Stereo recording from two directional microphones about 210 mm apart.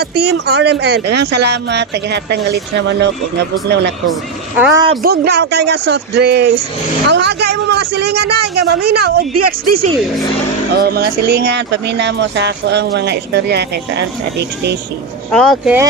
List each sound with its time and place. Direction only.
0.0 s speech: 50° right (ahead or behind)
4.5 s speech: 5° right (ahead or behind)
5.0 s speech: 50° right (ahead or behind)
10.8 s speech: 50° right (ahead or behind)
15.3 s speech: centre (ahead or behind)